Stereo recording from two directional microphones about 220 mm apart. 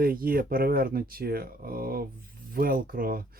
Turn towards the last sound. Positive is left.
turn(degrees=-40)  # may be behind; listen again after turning